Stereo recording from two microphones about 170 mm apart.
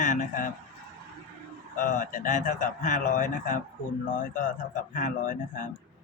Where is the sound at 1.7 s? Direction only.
50° left (ahead or behind).